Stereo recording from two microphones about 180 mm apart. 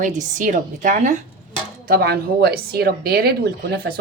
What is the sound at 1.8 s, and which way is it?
Speech, 60° right (ahead or behind).